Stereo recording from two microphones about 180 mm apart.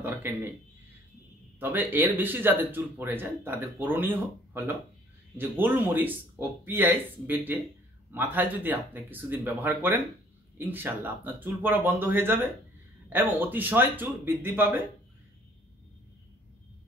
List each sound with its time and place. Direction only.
0.2 s speech: 10° right (ahead or behind)
1.6 s speech: 10° right (ahead or behind)